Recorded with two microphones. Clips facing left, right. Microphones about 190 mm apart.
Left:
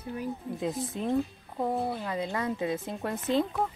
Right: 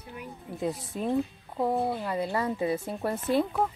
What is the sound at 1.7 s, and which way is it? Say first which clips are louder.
Speech: right 2 dB; 5° right (ahead or behind).